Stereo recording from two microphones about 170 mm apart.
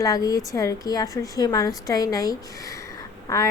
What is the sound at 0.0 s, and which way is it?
A woman's voice, 20° left (ahead or behind).